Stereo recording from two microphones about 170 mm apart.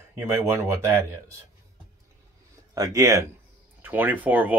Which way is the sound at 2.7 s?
20° right (ahead or behind).